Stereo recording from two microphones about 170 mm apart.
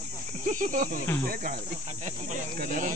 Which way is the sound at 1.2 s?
55° right (ahead or behind).